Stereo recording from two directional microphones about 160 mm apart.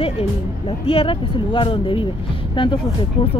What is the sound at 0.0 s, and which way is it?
Speech, 35° left (ahead or behind).